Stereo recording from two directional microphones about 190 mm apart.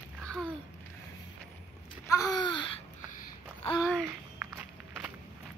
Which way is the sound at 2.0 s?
15° left (ahead or behind).